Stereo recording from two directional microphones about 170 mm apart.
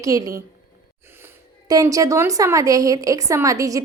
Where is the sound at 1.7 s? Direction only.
20° right (ahead or behind).